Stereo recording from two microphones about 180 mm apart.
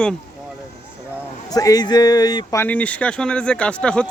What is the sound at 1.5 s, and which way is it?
Speech, 20° left (ahead or behind).